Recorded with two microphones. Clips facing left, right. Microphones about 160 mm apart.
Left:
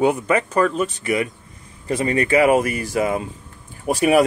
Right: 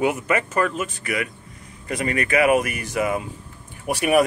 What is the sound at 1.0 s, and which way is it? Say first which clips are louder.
Speech: left 5 dB; 30° left (ahead or behind).